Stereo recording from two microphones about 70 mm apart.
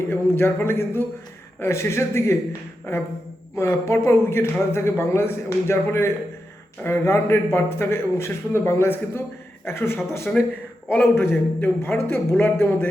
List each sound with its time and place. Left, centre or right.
0.1 s speech: left